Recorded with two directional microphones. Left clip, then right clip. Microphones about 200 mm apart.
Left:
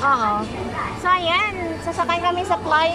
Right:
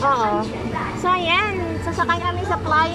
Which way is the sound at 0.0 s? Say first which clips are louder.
Even; 10° right (ahead or behind).